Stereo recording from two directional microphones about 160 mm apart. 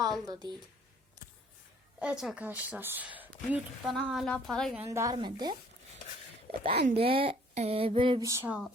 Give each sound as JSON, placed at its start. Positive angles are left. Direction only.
{"t": 0.0, "sound": "a woman's voice", "side_deg": -25}
{"t": 2.0, "sound": "a woman's voice", "side_deg": -5}
{"t": 4.8, "sound": "speech", "side_deg": -20}
{"t": 5.1, "sound": "speech", "side_deg": -30}
{"t": 6.9, "sound": "a sound", "side_deg": -35}
{"t": 8.2, "sound": "speech", "side_deg": -20}
{"t": 8.4, "sound": "a woman's voice", "side_deg": -5}